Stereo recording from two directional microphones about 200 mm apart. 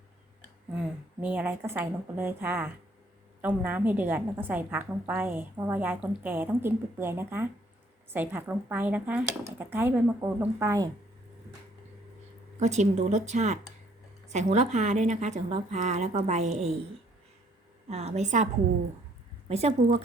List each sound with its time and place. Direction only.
0.7 s a woman's voice: 5° right (ahead or behind)
12.5 s speech: 35° right (ahead or behind)
17.8 s speech: 30° right (ahead or behind)
19.5 s speech: 30° right (ahead or behind)